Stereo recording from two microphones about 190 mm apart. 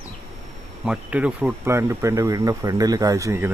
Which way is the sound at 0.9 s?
5° right (ahead or behind).